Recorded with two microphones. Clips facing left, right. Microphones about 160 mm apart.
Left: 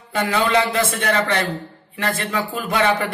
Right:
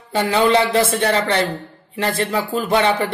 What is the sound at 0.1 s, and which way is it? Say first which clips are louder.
Speech: right 3 dB; 30° right (ahead or behind).